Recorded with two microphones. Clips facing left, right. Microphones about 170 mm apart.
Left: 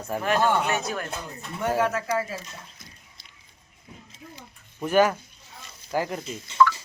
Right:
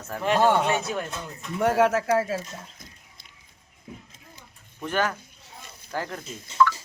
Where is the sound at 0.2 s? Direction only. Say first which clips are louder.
Right 3 dB; 25° right (ahead or behind).